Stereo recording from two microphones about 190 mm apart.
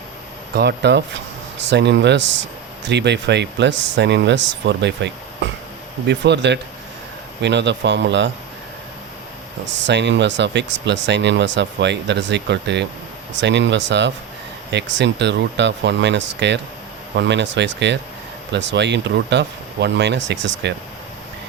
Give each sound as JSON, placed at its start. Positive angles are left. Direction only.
{"t": 0.5, "sound": "speech", "side_deg": -60}
{"t": 9.6, "sound": "speech", "side_deg": -70}